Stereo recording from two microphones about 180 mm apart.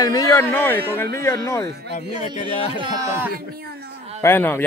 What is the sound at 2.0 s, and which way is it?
Speech, 35° left (ahead or behind).